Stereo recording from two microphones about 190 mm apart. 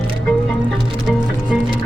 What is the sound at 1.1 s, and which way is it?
Music, centre (ahead or behind).